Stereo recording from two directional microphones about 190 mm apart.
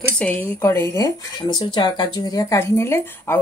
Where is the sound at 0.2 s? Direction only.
10° left (ahead or behind).